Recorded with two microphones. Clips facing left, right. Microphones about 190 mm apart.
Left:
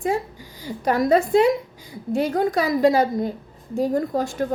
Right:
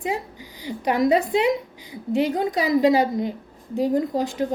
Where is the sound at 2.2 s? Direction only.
20° right (ahead or behind).